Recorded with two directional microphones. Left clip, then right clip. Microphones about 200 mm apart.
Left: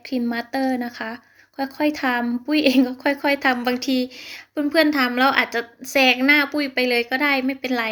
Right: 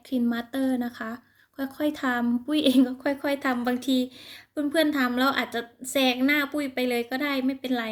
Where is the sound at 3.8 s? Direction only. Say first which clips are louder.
Left 4 dB; 60° right (ahead or behind).